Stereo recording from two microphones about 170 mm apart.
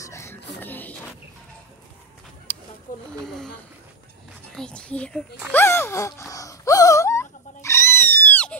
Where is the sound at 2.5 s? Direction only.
10° left (ahead or behind).